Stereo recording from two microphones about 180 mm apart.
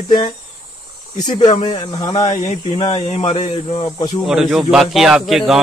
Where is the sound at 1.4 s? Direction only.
30° left (ahead or behind).